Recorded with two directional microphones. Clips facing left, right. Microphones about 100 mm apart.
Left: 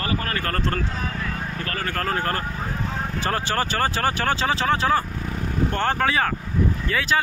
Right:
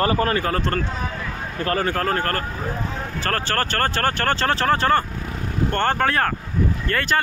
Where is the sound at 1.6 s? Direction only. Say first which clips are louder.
Right 10 dB; 30° right (ahead or behind).